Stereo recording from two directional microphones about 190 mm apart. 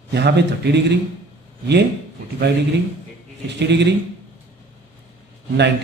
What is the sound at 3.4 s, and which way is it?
Speech, 65° right (ahead or behind).